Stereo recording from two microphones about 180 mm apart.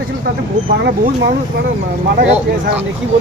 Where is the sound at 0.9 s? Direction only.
65° right (ahead or behind).